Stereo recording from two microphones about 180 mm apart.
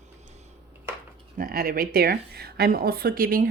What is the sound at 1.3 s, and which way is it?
Speech, 55° right (ahead or behind).